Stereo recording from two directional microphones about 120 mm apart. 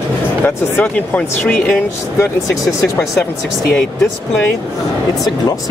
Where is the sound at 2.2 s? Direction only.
25° left (ahead or behind).